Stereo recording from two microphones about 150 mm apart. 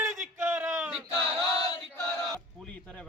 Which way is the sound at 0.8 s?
5° right (ahead or behind).